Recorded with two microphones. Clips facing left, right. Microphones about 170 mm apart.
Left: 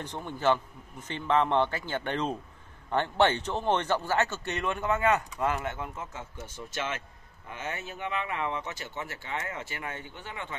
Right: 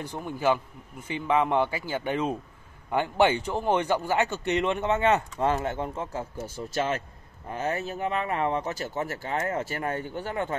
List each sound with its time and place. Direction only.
0.0 s a man's voice: 10° right (ahead or behind); by 10.5 s 40° right (ahead or behind)